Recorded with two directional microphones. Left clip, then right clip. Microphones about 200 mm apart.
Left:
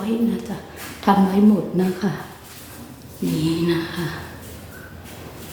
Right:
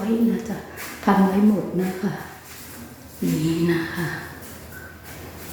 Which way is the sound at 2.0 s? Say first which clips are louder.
Left 3 dB; 20° left (ahead or behind).